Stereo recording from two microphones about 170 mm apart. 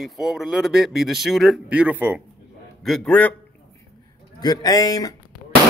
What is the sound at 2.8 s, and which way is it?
Speech, 5° left (ahead or behind).